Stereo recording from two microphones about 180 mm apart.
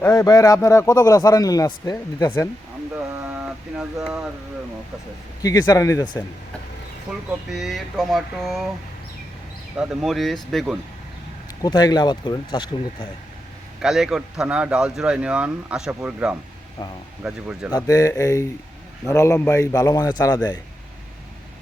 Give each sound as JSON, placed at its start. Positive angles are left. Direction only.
{"t": 0.0, "sound": "speech", "side_deg": 15}
{"t": 3.2, "sound": "a sound", "side_deg": -5}
{"t": 4.0, "sound": "speech", "side_deg": 0}
{"t": 5.4, "sound": "speech", "side_deg": 20}
{"t": 7.1, "sound": "speech", "side_deg": 0}
{"t": 9.7, "sound": "speech", "side_deg": 0}
{"t": 11.6, "sound": "speech", "side_deg": 20}
{"t": 13.8, "sound": "speech", "side_deg": -5}
{"t": 17.7, "sound": "speech", "side_deg": 20}